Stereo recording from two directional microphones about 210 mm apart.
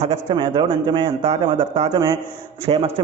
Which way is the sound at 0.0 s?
25° right (ahead or behind).